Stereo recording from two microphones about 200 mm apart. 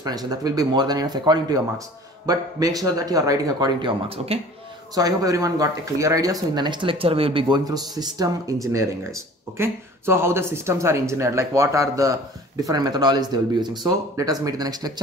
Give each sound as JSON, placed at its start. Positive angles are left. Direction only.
{"t": 0.0, "sound": "speech", "side_deg": -20}